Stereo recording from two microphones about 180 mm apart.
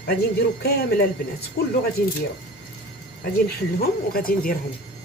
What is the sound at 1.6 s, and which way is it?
Speech, 65° left (ahead or behind).